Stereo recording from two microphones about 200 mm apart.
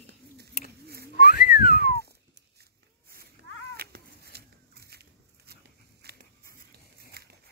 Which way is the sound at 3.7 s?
50° right (ahead or behind).